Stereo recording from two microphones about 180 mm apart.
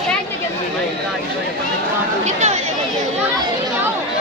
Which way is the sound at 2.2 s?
40° right (ahead or behind).